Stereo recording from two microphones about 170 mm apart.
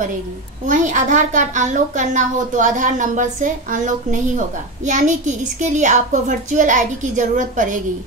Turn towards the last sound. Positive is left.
turn(degrees=-50)  # may be behind; listen again after turning